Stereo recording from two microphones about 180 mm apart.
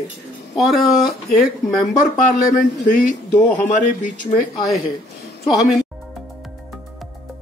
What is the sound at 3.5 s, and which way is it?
Speech, 45° left (ahead or behind).